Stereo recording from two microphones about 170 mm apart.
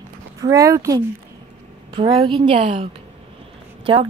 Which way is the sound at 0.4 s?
20° right (ahead or behind).